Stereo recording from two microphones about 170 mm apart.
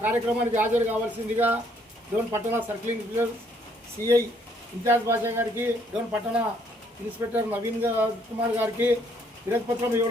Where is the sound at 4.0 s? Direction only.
20° right (ahead or behind).